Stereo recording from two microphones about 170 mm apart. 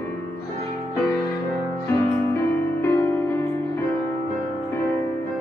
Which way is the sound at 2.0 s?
15° left (ahead or behind).